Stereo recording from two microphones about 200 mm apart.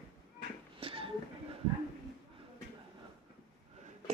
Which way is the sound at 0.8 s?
25° right (ahead or behind).